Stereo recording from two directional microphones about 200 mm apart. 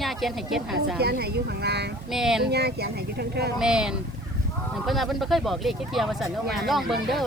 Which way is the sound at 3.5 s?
5° right (ahead or behind).